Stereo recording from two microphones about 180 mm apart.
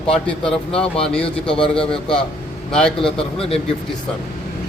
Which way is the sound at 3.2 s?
35° left (ahead or behind).